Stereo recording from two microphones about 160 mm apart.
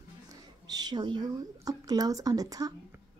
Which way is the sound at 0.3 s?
25° right (ahead or behind).